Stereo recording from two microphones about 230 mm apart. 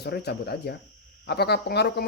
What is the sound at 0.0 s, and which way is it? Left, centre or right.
Speech, left.